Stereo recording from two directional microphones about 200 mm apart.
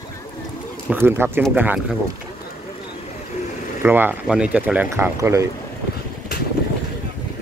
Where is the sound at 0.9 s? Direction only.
10° right (ahead or behind).